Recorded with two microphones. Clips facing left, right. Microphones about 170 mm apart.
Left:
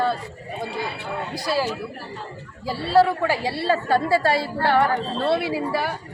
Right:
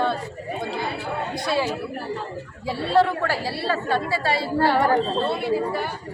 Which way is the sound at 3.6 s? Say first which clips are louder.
Left 4 dB; 40° left (ahead or behind).